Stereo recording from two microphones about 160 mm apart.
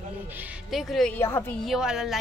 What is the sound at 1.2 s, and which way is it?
Speech, 15° left (ahead or behind).